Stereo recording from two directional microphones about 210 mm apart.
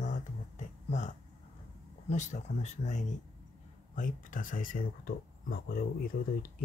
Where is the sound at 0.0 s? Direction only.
35° left (ahead or behind).